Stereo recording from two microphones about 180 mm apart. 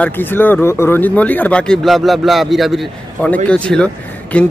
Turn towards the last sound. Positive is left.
turn(degrees=5)  # may be behind; listen again after turning